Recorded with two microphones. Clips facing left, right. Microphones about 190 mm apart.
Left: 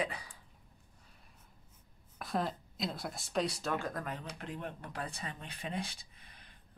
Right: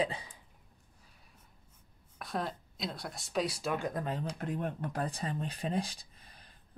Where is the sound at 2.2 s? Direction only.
Centre (ahead or behind); by 4.1 s 20° right (ahead or behind).